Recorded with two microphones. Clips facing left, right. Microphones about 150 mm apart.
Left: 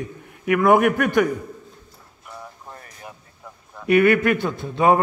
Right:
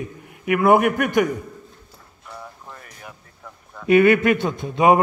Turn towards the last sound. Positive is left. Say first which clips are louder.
# right 1 dB
turn(degrees=-20)  # may be behind; listen again after turning